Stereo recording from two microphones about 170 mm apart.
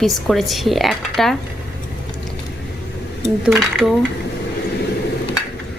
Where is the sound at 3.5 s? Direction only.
5° right (ahead or behind).